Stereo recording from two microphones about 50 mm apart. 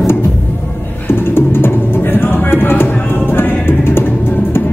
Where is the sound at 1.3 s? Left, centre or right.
Left.